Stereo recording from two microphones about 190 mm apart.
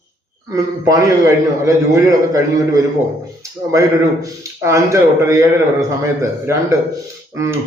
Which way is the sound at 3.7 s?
15° right (ahead or behind).